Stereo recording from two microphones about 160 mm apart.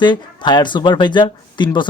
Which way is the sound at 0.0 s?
30° left (ahead or behind).